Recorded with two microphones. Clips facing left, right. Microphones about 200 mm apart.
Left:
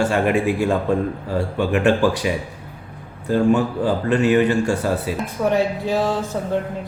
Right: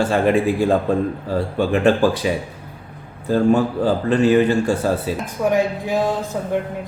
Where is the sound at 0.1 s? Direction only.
35° right (ahead or behind).